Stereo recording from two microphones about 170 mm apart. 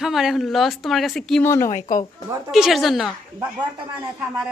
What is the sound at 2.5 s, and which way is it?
Speech, centre (ahead or behind).